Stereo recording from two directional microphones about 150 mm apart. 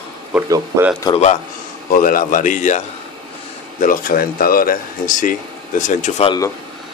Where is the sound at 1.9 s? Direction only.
65° left (ahead or behind).